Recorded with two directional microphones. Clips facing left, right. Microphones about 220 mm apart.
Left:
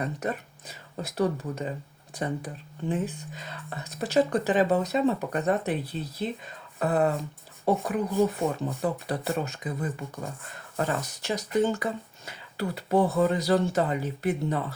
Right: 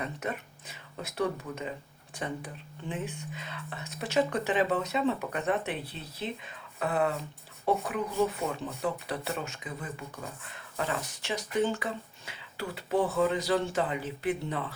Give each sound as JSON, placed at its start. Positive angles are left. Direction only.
{"t": 0.0, "sound": "speech", "side_deg": 40}